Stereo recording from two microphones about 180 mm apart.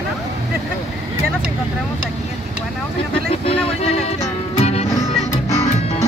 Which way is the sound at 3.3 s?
35° left (ahead or behind).